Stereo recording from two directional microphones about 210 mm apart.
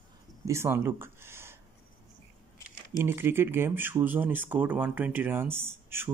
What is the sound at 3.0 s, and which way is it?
Speech, 10° right (ahead or behind).